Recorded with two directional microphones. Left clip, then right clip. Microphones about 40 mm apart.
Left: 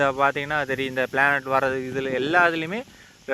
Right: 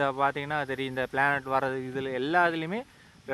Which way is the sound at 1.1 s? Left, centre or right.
Left.